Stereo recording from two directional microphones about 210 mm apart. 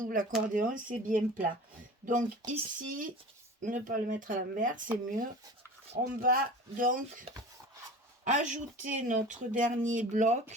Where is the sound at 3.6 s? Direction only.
40° right (ahead or behind).